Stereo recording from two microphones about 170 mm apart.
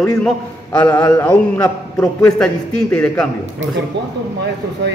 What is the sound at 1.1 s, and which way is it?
A man's voice, 15° left (ahead or behind).